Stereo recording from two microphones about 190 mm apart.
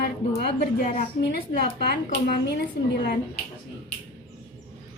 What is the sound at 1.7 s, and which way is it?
Speech, 60° left (ahead or behind).